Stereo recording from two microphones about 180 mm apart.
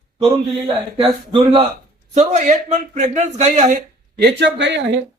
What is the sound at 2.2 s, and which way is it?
A man's voice, 40° right (ahead or behind).